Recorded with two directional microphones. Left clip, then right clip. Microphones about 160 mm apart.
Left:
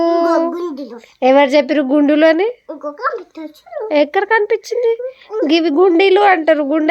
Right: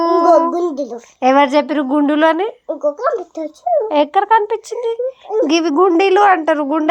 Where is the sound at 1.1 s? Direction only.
35° left (ahead or behind).